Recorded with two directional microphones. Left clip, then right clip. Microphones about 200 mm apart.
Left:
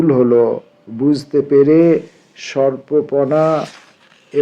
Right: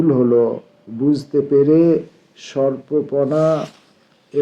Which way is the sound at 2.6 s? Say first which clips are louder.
Left 3 dB; 40° left (ahead or behind).